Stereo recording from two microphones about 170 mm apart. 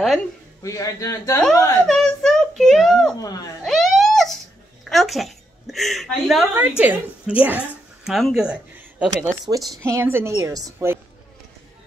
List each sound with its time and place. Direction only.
0.6 s a man's voice: 20° left (ahead or behind)
1.9 s a sound: centre (ahead or behind)
3.6 s baby cry: centre (ahead or behind)
4.8 s a woman's voice: centre (ahead or behind); by 11.0 s 20° right (ahead or behind)